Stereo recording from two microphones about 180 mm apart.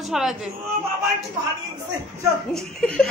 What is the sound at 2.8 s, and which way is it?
Speech, 5° left (ahead or behind).